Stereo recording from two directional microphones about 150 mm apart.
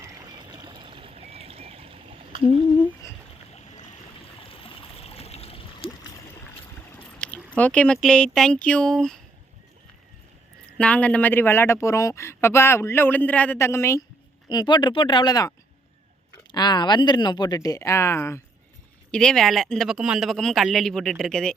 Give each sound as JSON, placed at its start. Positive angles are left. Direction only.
{"t": 0.0, "sound": "a sound", "side_deg": -25}
{"t": 4.4, "sound": "stream", "side_deg": 35}
{"t": 6.9, "sound": "speech", "side_deg": 10}
{"t": 10.8, "sound": "speech", "side_deg": 10}
{"t": 14.5, "sound": "speech", "side_deg": 30}
{"t": 19.1, "sound": "speech", "side_deg": 5}